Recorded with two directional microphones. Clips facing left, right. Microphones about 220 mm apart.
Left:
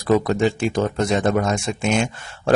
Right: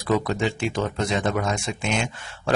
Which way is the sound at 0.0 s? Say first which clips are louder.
Left 5 dB; 45° left (ahead or behind).